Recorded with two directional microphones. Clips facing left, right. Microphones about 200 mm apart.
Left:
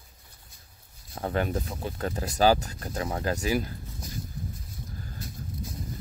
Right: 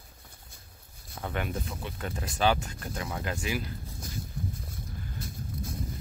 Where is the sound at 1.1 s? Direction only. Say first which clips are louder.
Left 5 dB; 35° left (ahead or behind).